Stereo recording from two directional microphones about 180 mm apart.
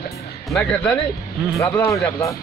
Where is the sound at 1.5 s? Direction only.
15° left (ahead or behind).